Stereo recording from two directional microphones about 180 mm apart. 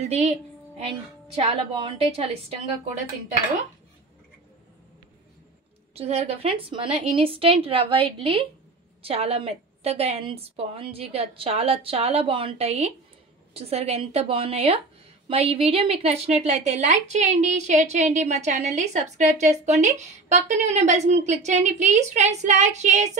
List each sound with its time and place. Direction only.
0.7 s a woman's voice: 35° right (ahead or behind)
5.9 s a woman's voice: 35° right (ahead or behind)